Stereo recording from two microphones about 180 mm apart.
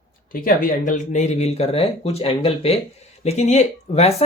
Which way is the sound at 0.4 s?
50° left (ahead or behind).